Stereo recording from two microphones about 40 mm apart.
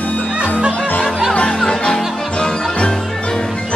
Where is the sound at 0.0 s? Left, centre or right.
Left.